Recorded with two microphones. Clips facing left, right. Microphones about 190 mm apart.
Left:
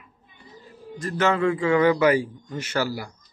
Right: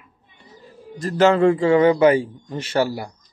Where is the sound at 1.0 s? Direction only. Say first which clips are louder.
Right 7 dB; 30° right (ahead or behind).